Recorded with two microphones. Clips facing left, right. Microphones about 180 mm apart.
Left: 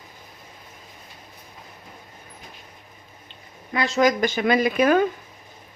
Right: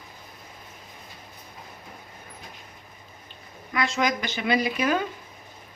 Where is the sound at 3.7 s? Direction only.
35° left (ahead or behind); by 5.0 s 50° left (ahead or behind).